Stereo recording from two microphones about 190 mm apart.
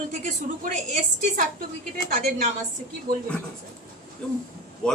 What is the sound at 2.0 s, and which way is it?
Speech, 50° right (ahead or behind).